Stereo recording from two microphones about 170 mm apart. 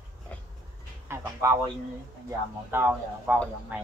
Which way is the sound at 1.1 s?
15° right (ahead or behind).